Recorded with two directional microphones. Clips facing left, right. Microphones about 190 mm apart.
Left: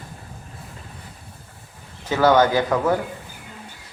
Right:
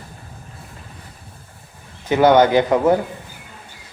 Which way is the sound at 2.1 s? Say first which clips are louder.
Right 4 dB; 20° right (ahead or behind).